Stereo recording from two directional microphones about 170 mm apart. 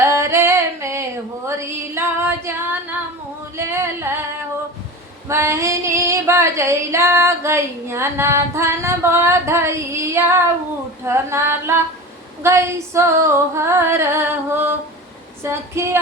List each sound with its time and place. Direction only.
0.0 s singing: 15° right (ahead or behind)
1.5 s female singing: 15° right (ahead or behind)
3.6 s a sound: 15° right (ahead or behind)
5.3 s female singing: 15° right (ahead or behind)